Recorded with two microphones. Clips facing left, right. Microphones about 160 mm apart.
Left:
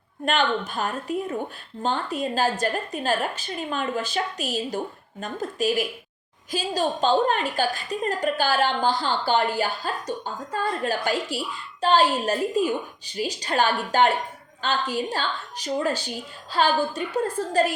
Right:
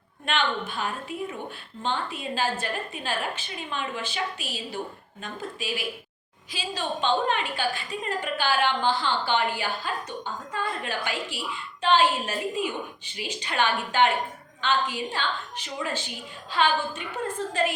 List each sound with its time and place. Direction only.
0.3 s a woman's voice: 40° left (ahead or behind)